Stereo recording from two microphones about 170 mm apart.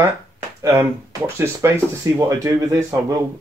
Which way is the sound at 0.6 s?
15° right (ahead or behind).